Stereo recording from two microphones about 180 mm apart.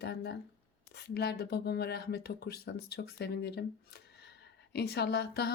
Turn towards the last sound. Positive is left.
turn(degrees=65)  # may be behind; listen again after turning